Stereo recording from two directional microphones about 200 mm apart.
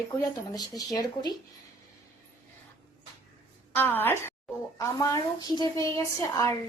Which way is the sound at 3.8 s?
10° left (ahead or behind).